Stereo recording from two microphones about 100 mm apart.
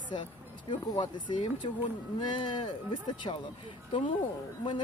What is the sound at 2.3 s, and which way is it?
Speech, 55° left (ahead or behind).